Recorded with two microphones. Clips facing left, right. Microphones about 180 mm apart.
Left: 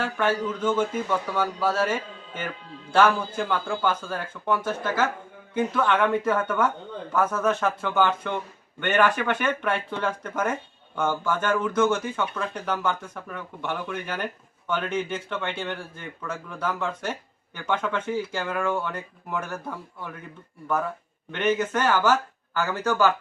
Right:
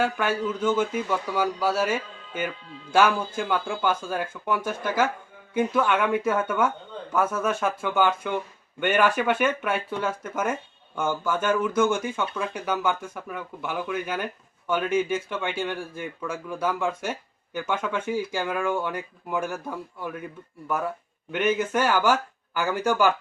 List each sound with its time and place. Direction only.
0.0 s speech: 10° right (ahead or behind)
21.3 s speech: 10° right (ahead or behind)